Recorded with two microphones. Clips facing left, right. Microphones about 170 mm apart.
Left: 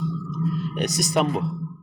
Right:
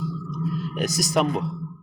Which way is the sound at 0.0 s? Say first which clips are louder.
Left 2 dB; centre (ahead or behind).